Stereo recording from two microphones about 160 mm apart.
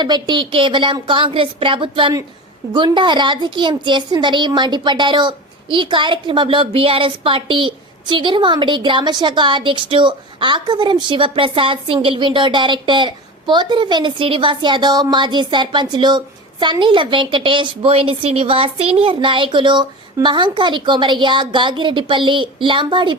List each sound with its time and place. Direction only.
0.0 s a woman's voice: 30° right (ahead or behind)